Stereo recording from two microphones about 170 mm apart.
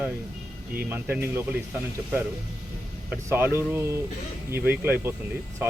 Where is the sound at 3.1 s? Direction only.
15° right (ahead or behind).